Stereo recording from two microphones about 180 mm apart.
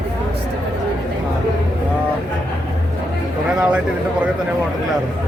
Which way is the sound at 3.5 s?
5° right (ahead or behind).